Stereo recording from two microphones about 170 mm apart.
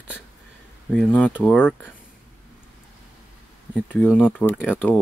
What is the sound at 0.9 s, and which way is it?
Speech, 5° left (ahead or behind).